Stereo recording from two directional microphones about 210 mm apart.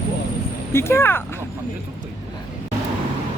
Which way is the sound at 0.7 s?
10° left (ahead or behind).